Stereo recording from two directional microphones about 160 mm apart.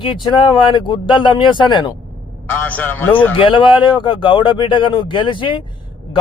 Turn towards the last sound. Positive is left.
turn(degrees=30)  # may be behind; listen again after turning